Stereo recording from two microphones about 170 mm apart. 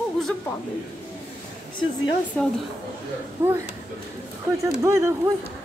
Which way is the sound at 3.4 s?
15° right (ahead or behind).